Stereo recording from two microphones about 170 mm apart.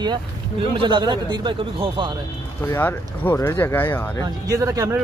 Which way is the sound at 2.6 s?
15° left (ahead or behind).